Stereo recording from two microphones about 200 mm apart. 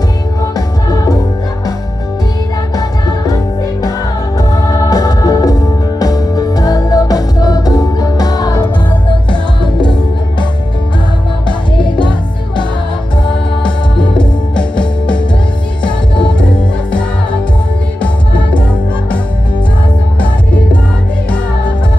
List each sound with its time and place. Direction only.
0.6 s music: 20° left (ahead or behind)
2.7 s music: 20° left (ahead or behind)
4.4 s music: 15° left (ahead or behind)
11.4 s music: 25° left (ahead or behind)
13.7 s music: 5° left (ahead or behind)